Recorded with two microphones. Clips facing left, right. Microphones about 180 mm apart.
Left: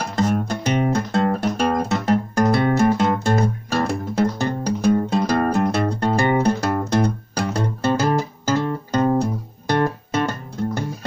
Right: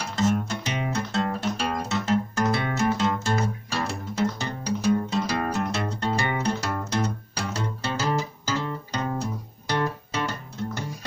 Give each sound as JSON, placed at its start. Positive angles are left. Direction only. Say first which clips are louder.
{"t": 0.0, "sound": "music", "louder": "left 3 dB", "side_deg": 55}
{"t": 2.4, "sound": "music", "louder": "left 8 dB", "side_deg": 45}